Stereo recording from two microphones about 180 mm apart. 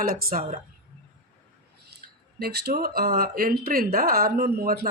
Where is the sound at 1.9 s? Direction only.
65° right (ahead or behind).